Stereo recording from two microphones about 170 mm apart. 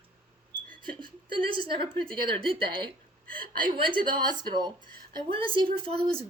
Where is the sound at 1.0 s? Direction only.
30° right (ahead or behind).